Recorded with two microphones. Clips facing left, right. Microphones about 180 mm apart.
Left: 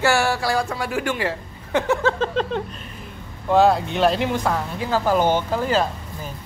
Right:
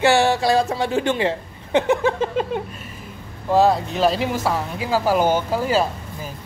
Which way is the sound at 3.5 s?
Centre (ahead or behind).